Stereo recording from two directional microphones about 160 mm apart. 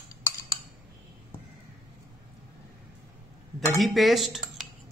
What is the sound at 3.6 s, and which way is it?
Speech, centre (ahead or behind).